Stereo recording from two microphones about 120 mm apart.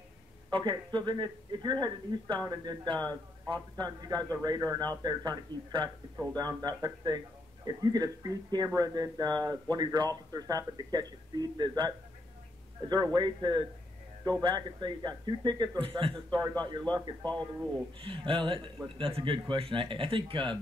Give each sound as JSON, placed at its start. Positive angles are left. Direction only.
{"t": 0.5, "sound": "speech", "side_deg": -40}
{"t": 12.9, "sound": "speech", "side_deg": -35}